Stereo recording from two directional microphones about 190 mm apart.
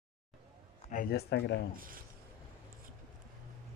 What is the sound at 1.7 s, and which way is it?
Speech, 50° right (ahead or behind).